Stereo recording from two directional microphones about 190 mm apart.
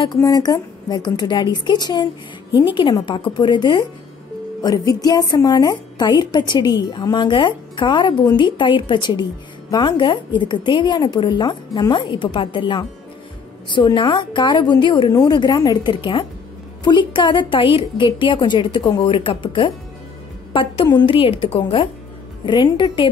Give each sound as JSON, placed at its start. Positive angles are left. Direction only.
{"t": 0.0, "sound": "a woman's voice", "side_deg": 20}